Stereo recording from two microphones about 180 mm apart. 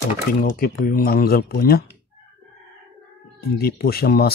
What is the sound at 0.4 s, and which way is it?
Speech, 50° left (ahead or behind).